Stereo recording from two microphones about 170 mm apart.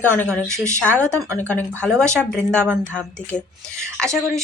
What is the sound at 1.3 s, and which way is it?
Speech, 10° left (ahead or behind).